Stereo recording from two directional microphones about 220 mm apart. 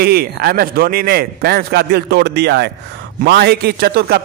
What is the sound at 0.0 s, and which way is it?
A man's voice, 45° right (ahead or behind).